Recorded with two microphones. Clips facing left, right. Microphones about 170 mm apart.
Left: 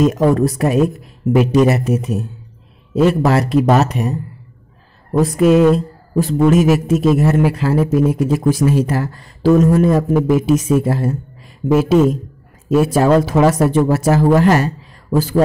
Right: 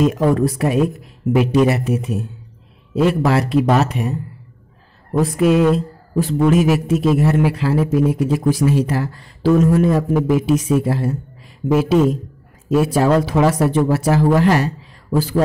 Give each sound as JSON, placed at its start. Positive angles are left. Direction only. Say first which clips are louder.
{"t": 0.0, "sound": "speech", "louder": "left 2 dB", "side_deg": 40}
{"t": 5.2, "sound": "speech", "louder": "left 3 dB", "side_deg": 40}